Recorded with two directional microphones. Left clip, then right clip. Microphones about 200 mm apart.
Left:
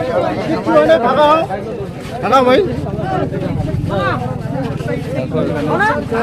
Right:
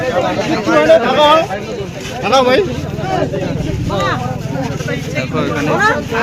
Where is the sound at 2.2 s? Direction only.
25° left (ahead or behind).